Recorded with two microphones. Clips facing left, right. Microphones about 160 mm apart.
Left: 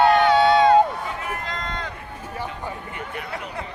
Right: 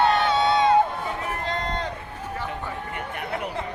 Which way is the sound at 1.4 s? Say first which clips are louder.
Right 3 dB; 35° right (ahead or behind).